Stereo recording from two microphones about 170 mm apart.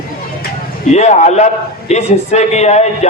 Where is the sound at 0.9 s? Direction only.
40° left (ahead or behind).